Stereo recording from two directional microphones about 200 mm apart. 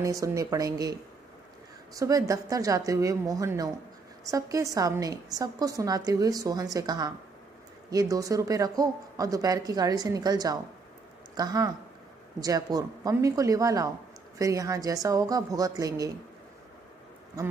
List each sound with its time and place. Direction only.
0.0 s a woman's voice: 15° right (ahead or behind)
2.0 s a woman's voice: 15° right (ahead or behind)